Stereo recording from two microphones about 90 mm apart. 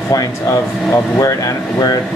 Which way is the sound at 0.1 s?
40° left (ahead or behind).